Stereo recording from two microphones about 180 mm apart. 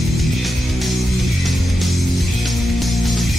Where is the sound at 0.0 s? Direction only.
Centre (ahead or behind).